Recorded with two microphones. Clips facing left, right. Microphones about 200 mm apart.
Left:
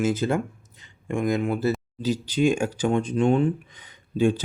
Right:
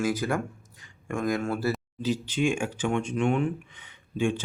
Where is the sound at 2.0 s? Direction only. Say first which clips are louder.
Left 4 dB; 40° left (ahead or behind).